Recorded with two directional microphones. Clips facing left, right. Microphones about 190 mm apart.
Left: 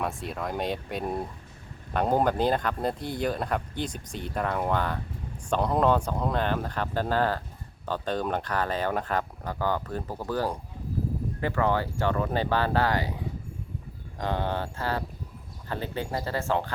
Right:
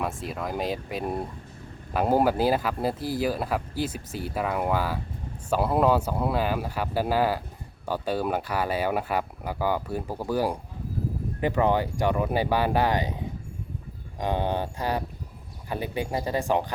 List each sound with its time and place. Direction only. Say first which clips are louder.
0.0 s speech: right 1 dB; centre (ahead or behind)